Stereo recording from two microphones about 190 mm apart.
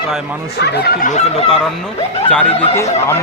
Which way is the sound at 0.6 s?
55° left (ahead or behind).